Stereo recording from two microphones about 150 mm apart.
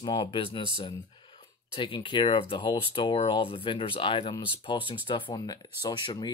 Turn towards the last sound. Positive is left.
turn(degrees=30)  # may be behind; listen again after turning